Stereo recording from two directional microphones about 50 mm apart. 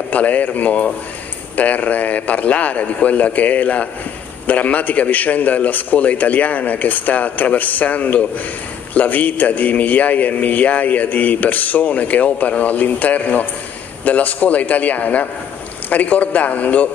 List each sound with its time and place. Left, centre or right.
0.1 s a man's voice: left